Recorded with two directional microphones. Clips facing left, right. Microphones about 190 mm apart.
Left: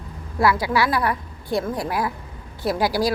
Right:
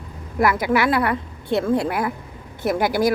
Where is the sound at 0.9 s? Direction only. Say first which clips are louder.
Right 2 dB; 55° right (ahead or behind).